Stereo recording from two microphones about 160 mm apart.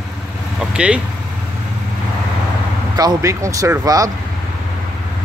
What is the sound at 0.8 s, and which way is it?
Speech, 5° right (ahead or behind).